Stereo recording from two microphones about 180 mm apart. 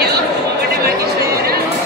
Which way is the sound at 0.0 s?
60° right (ahead or behind).